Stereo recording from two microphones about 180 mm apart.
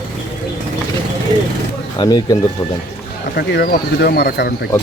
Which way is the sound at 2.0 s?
20° left (ahead or behind).